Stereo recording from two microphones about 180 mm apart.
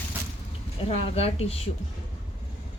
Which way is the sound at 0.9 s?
35° left (ahead or behind).